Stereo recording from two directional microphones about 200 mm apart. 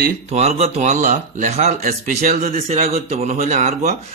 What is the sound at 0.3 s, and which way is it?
A man's voice, 30° right (ahead or behind).